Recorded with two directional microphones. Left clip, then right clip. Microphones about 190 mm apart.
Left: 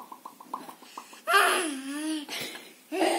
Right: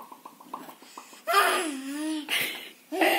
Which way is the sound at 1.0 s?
Centre (ahead or behind).